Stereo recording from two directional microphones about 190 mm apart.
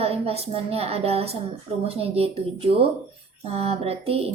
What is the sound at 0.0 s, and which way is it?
A woman's voice, 30° right (ahead or behind).